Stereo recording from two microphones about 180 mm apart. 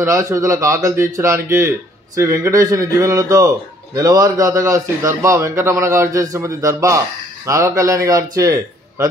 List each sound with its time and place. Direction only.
0.0 s a man's voice: 15° right (ahead or behind)